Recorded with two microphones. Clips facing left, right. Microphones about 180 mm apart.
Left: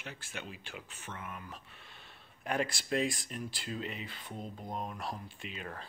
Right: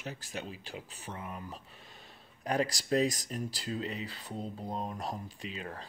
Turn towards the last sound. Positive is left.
turn(degrees=-30)  # may be behind; listen again after turning